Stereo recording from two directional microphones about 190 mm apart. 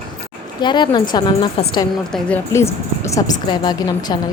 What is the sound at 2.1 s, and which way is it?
A woman's voice, 10° left (ahead or behind).